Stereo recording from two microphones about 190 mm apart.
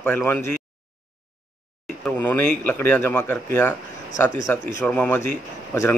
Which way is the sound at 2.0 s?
10° left (ahead or behind).